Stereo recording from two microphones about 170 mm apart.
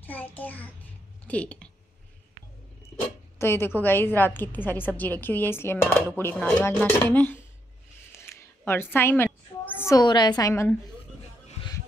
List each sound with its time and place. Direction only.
0.0 s a woman's voice: 10° left (ahead or behind)
3.3 s a woman's voice: 15° left (ahead or behind)
8.1 s a sound: 15° left (ahead or behind)